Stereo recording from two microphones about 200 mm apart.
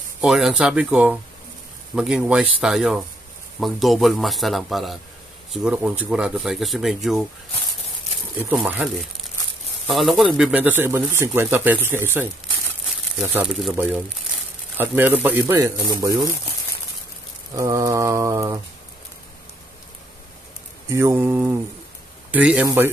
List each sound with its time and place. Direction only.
0.2 s speech: centre (ahead or behind)
8.5 s speech: 5° right (ahead or behind)
17.6 s speech: 15° right (ahead or behind)
20.9 s speech: 15° right (ahead or behind)